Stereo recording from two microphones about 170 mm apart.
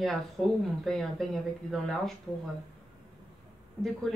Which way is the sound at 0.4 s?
Centre (ahead or behind).